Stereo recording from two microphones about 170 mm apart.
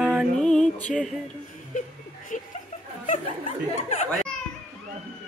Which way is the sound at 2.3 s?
45° left (ahead or behind).